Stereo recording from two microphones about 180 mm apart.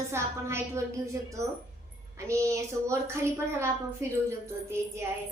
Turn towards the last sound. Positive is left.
turn(degrees=-15)  # may be behind; listen again after turning